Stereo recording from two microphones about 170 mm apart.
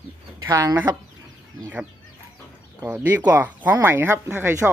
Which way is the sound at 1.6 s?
10° right (ahead or behind).